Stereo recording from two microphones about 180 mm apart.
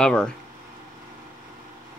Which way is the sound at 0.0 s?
5° left (ahead or behind).